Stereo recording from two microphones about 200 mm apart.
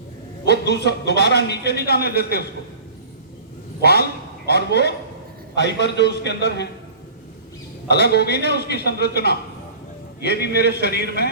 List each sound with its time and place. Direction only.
0.4 s a man's voice: 55° left (ahead or behind)
3.8 s a man's voice: 55° left (ahead or behind)
7.9 s a man's voice: 55° left (ahead or behind)